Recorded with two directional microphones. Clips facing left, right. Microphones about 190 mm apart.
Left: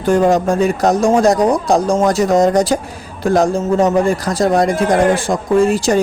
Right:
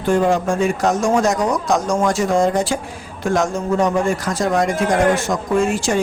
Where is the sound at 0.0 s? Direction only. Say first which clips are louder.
Left 4 dB; 40° left (ahead or behind).